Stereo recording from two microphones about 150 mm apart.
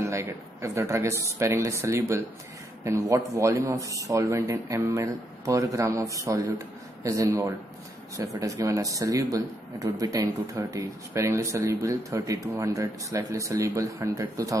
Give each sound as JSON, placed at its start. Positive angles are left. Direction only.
{"t": 0.0, "sound": "speech", "side_deg": -20}